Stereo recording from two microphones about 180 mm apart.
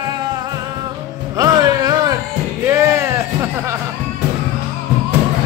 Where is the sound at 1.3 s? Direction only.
20° right (ahead or behind).